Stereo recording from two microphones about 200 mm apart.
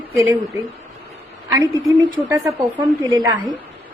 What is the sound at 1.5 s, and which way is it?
A woman's voice, 15° right (ahead or behind).